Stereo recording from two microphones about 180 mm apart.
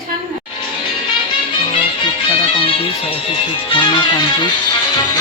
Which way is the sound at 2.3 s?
30° left (ahead or behind).